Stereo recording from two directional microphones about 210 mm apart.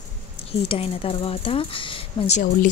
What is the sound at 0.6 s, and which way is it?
Speech, 25° left (ahead or behind).